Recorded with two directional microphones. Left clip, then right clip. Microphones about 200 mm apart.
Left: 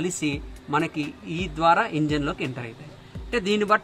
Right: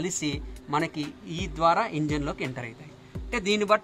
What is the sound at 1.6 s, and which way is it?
Speech, 30° right (ahead or behind).